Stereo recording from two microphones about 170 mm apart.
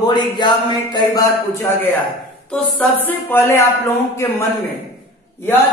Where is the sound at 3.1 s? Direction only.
10° left (ahead or behind).